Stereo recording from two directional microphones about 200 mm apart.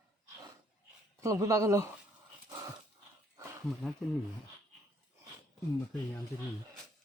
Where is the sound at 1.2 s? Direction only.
15° right (ahead or behind).